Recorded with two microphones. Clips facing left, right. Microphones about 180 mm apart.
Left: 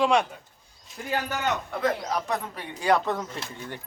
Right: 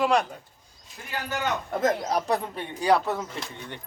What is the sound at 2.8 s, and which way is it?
Speech, 10° right (ahead or behind).